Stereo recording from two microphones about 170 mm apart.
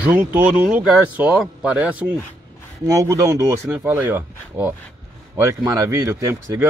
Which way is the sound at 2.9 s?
20° right (ahead or behind).